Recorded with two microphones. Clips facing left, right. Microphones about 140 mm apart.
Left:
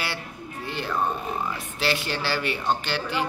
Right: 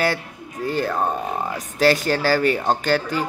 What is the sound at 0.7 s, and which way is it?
A man's voice, 40° right (ahead or behind).